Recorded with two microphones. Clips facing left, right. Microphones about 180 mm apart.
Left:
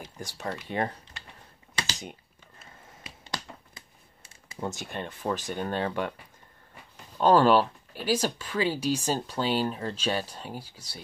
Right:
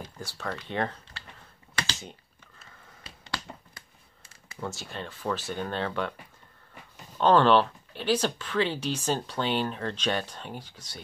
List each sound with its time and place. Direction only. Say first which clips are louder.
0.2 s speech: left 1 dB; 15° left (ahead or behind)
1.8 s typing: even; 15° left (ahead or behind)
4.6 s speech: left 2 dB; 20° left (ahead or behind)
7.2 s speech: even; 10° left (ahead or behind)